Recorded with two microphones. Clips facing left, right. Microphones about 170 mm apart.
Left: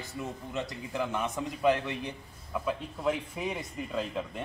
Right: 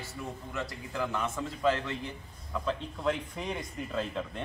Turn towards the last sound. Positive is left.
turn(degrees=5)  # may be behind; listen again after turning